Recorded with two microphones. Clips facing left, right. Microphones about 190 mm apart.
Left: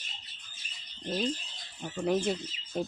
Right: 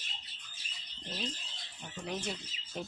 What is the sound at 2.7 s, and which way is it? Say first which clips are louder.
Speech: left 8 dB; 40° left (ahead or behind).